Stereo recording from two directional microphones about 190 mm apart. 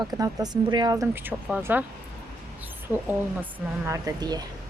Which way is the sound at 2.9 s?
10° right (ahead or behind).